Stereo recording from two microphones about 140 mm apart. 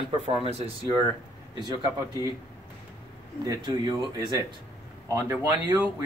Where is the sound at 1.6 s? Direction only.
30° right (ahead or behind).